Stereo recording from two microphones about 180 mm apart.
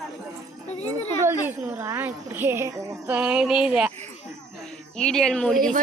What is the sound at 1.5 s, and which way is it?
A woman's voice, 10° right (ahead or behind).